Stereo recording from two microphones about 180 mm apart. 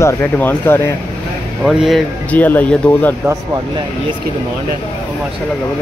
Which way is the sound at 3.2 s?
15° right (ahead or behind).